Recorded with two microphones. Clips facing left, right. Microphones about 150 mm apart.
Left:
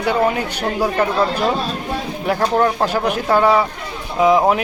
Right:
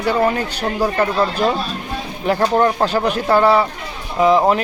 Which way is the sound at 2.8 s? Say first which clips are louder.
Right 1 dB; 10° left (ahead or behind).